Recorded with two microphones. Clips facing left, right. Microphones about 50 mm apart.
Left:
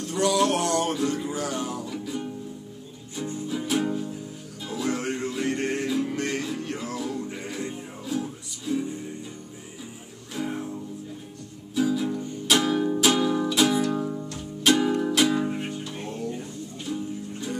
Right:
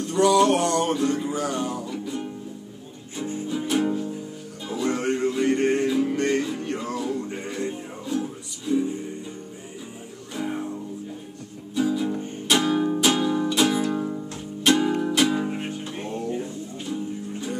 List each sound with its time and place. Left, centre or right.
0.0 s music: centre
3.2 s music: right
3.4 s music: centre
10.3 s music: centre
11.7 s music: centre
12.1 s music: right
12.4 s music: centre
15.6 s music: right